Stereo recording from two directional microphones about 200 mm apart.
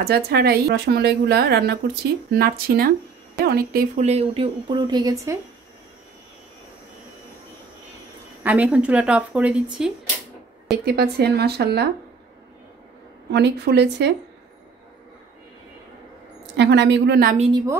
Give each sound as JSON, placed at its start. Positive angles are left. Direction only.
{"t": 0.0, "sound": "a woman's voice", "side_deg": -50}
{"t": 8.5, "sound": "speech", "side_deg": -5}
{"t": 10.9, "sound": "speech", "side_deg": -55}
{"t": 13.3, "sound": "speech", "side_deg": -55}
{"t": 16.5, "sound": "speech", "side_deg": -60}